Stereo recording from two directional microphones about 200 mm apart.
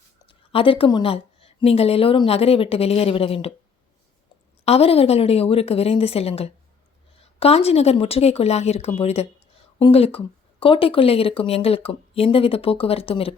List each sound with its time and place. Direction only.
0.2 s a woman's voice: 25° left (ahead or behind)
4.6 s speech: 30° left (ahead or behind)